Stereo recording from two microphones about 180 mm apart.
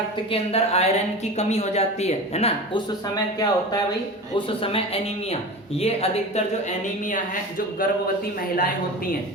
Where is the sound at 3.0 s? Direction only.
20° left (ahead or behind).